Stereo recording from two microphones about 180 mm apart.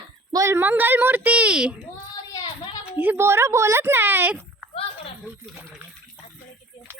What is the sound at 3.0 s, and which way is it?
A woman's voice, 10° right (ahead or behind).